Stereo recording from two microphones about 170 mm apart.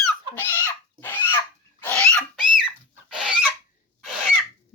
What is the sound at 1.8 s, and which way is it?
Dog, 10° left (ahead or behind).